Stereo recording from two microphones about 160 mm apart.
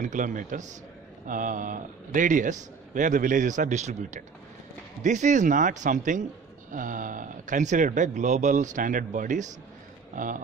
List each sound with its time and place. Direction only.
0.0 s a man's voice: 50° right (ahead or behind)